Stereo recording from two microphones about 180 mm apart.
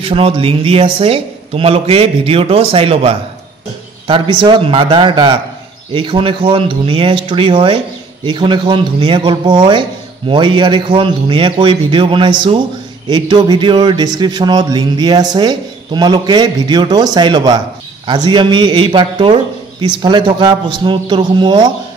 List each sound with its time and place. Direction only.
0.0 s speech: 30° right (ahead or behind)